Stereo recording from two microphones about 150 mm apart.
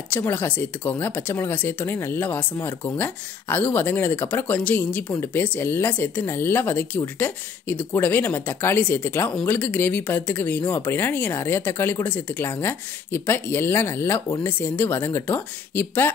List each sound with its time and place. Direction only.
0.1 s speech: 15° left (ahead or behind)